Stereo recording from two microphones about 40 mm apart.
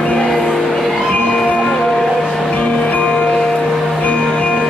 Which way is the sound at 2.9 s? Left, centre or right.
Left.